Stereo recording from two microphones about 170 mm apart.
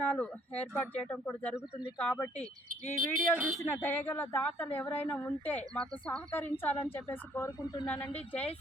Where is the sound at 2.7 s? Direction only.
50° right (ahead or behind).